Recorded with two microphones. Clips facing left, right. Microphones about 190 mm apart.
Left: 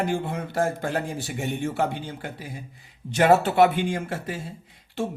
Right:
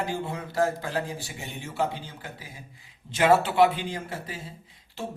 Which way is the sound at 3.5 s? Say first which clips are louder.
Left 3 dB; 50° left (ahead or behind).